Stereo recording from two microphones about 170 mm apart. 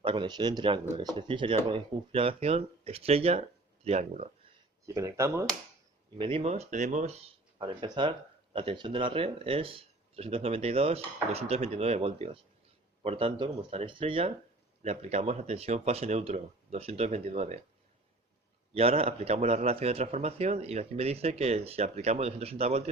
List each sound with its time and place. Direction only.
0.0 s speech: 30° right (ahead or behind)
4.9 s speech: 20° right (ahead or behind)
6.1 s speech: 30° right (ahead or behind)
18.7 s speech: 35° right (ahead or behind)